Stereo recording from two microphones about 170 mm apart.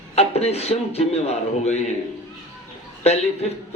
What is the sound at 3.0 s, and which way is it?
Speech, 40° left (ahead or behind).